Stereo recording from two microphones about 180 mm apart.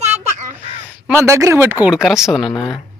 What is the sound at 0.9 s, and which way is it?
Speech, 10° right (ahead or behind).